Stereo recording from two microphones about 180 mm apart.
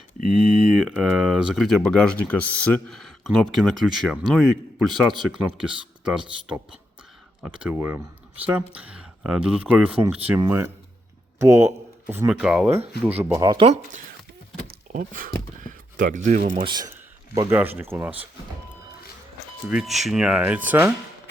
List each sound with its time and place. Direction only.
0.3 s speech: 5° right (ahead or behind)
13.4 s speech: 25° right (ahead or behind)
14.9 s speech: 50° right (ahead or behind)
16.6 s speech: 20° right (ahead or behind)
17.5 s speech: 10° right (ahead or behind)
19.7 s speech: centre (ahead or behind)